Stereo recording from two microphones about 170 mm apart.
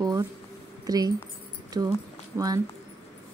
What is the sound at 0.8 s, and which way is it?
A woman's voice, 20° right (ahead or behind).